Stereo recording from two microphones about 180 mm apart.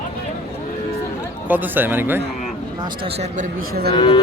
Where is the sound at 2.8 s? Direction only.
35° right (ahead or behind).